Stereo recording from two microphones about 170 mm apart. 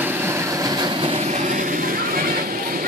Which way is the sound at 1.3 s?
50° right (ahead or behind).